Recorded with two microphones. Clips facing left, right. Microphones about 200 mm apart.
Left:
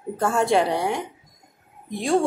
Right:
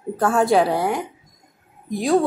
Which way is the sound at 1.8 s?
Centre (ahead or behind).